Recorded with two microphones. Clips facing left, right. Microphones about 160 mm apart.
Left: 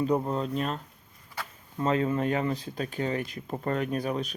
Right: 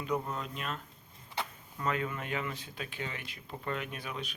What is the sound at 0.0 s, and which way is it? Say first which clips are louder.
Speech: left 8 dB; 35° left (ahead or behind).